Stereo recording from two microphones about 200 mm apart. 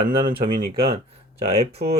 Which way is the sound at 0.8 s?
30° right (ahead or behind).